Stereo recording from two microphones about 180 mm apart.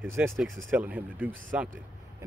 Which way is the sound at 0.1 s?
15° right (ahead or behind).